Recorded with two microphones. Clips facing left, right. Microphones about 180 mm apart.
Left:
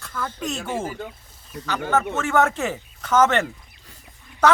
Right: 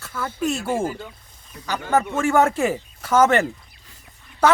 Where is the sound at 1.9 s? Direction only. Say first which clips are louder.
Right 3 dB; 10° right (ahead or behind).